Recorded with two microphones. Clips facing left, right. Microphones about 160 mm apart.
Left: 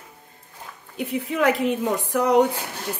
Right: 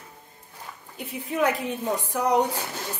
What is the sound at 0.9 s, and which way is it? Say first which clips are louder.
A woman's voice: left 4 dB; 70° left (ahead or behind).